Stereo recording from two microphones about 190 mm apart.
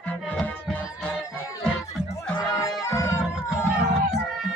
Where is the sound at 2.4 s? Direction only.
15° left (ahead or behind).